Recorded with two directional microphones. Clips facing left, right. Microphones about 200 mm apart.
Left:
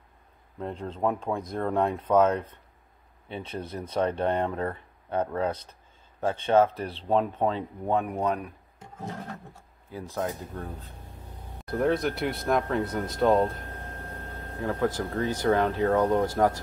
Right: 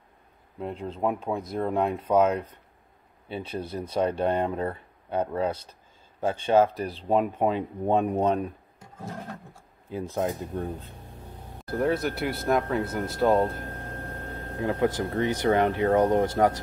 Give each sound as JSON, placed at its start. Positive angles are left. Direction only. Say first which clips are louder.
{"t": 0.6, "sound": "speech", "louder": "right 1 dB", "side_deg": -5}
{"t": 9.8, "sound": "speech", "louder": "right 3 dB", "side_deg": -20}
{"t": 11.6, "sound": "speech", "louder": "even", "side_deg": -5}
{"t": 14.6, "sound": "speech", "louder": "right 2 dB", "side_deg": -15}